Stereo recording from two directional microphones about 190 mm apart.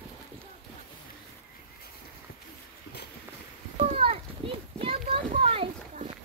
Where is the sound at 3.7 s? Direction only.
30° right (ahead or behind).